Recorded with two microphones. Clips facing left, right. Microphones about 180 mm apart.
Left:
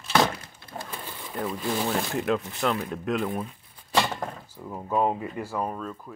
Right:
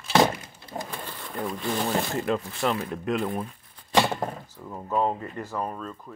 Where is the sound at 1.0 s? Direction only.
5° left (ahead or behind).